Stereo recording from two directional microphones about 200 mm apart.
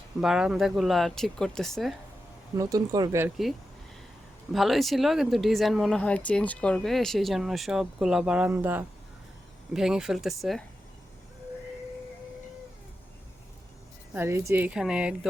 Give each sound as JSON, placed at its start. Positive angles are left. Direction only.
{"t": 0.2, "sound": "speech", "side_deg": -5}
{"t": 2.6, "sound": "a woman's voice", "side_deg": -20}
{"t": 4.5, "sound": "speech", "side_deg": 0}
{"t": 14.1, "sound": "a woman's voice", "side_deg": -10}